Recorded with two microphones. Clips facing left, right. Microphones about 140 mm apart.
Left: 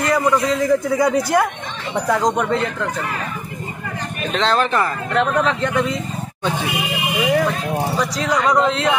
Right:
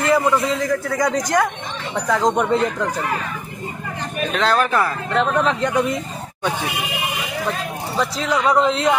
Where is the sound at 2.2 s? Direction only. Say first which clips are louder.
Right 1 dB; 5° right (ahead or behind).